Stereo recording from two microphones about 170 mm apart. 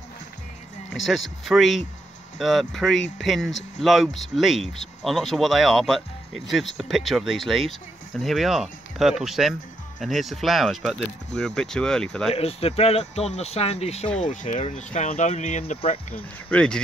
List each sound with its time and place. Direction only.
1.0 s speech: centre (ahead or behind)
12.4 s speech: 35° left (ahead or behind)
16.2 s speech: 10° left (ahead or behind)